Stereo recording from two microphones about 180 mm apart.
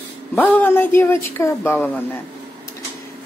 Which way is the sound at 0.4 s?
10° left (ahead or behind).